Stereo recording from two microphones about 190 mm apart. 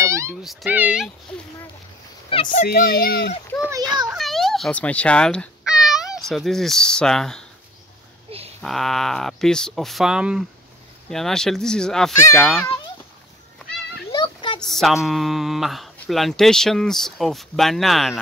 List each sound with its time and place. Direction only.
0.0 s meow: 15° right (ahead or behind)
0.4 s speech: centre (ahead or behind)
2.2 s a sound: 30° left (ahead or behind)
2.5 s a child's voice: 50° left (ahead or behind)
4.2 s cat: centre (ahead or behind)
6.2 s speech: centre (ahead or behind)
8.3 s a sound: 30° right (ahead or behind)
8.5 s speech: centre (ahead or behind)
14.1 s a sound: 25° left (ahead or behind)
14.6 s speech: centre (ahead or behind)